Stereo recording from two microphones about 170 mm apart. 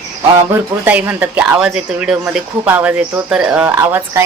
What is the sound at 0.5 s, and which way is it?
Speech, 10° right (ahead or behind).